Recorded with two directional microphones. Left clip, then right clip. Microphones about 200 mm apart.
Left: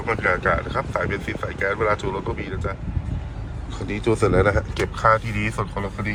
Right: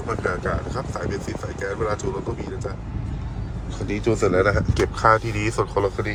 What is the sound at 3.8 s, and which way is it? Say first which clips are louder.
Speech: left 1 dB; 10° right (ahead or behind).